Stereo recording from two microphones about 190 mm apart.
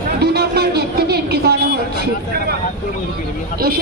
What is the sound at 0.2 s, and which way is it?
Music, 55° right (ahead or behind).